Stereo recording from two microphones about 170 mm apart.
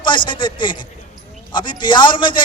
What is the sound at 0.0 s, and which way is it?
A man's voice, 30° left (ahead or behind).